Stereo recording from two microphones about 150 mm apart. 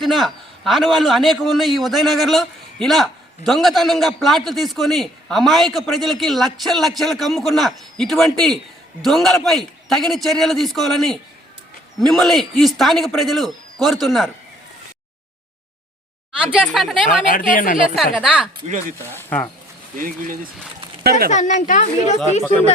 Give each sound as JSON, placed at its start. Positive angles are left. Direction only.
{"t": 0.0, "sound": "a man's voice", "side_deg": 0}
{"t": 16.4, "sound": "a man's voice", "side_deg": -5}
{"t": 17.2, "sound": "a woman's voice", "side_deg": 65}
{"t": 18.1, "sound": "a man's voice", "side_deg": -5}
{"t": 18.6, "sound": "speech", "side_deg": -45}
{"t": 19.1, "sound": "speech", "side_deg": 10}
{"t": 20.0, "sound": "speech", "side_deg": -65}
{"t": 21.0, "sound": "speech", "side_deg": -90}
{"t": 21.2, "sound": "speech", "side_deg": 55}